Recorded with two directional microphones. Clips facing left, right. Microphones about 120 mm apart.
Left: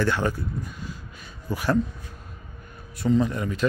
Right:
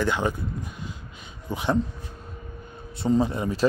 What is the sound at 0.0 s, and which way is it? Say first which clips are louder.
Speech: even; 15° right (ahead or behind).